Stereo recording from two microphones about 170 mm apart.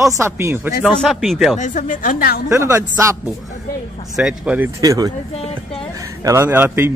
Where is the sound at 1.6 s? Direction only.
50° left (ahead or behind).